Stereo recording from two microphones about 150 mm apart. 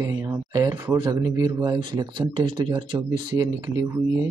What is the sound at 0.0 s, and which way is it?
A man's voice, 20° right (ahead or behind).